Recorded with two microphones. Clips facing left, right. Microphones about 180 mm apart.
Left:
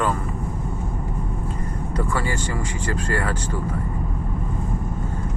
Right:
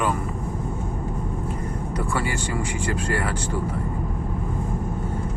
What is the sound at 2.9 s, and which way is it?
Speech, 15° right (ahead or behind).